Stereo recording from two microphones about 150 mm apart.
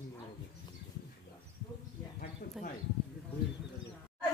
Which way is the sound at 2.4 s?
75° left (ahead or behind).